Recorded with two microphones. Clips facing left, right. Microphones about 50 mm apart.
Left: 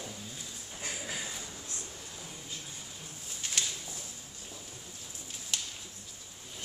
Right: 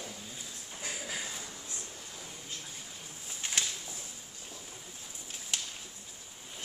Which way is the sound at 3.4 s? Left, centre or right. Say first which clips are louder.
Right 1 dB; right.